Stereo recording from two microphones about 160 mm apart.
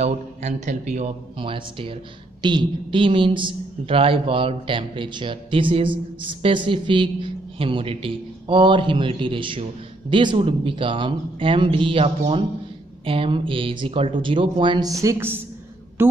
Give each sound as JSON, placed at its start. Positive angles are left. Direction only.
{"t": 0.0, "sound": "a man's voice", "side_deg": -45}
{"t": 1.4, "sound": "a woman's voice", "side_deg": -35}